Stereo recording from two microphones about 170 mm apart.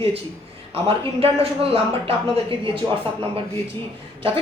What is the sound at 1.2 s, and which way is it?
A woman's voice, 35° right (ahead or behind).